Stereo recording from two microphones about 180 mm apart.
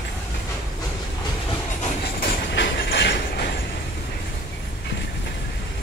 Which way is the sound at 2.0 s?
60° left (ahead or behind).